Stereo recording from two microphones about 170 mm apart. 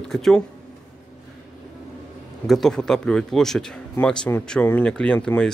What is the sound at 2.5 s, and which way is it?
Speech, centre (ahead or behind).